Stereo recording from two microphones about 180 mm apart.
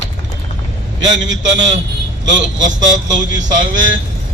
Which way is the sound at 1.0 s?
90° right.